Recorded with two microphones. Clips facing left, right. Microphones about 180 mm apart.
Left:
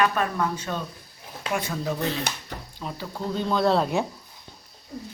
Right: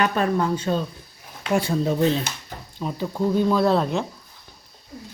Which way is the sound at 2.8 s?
15° right (ahead or behind).